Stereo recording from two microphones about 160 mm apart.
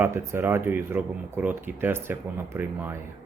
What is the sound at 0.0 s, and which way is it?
Speech, 15° right (ahead or behind).